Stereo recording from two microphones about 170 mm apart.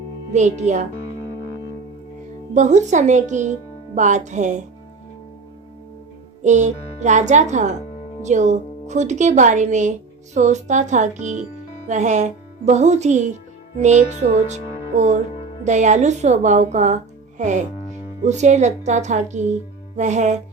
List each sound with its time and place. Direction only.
0.3 s a woman's voice: 45° right (ahead or behind)
2.5 s a woman's voice: 45° right (ahead or behind)
6.4 s a woman's voice: 45° right (ahead or behind)